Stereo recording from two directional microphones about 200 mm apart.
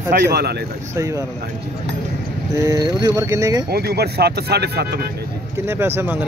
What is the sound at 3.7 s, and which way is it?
Speech, 50° right (ahead or behind).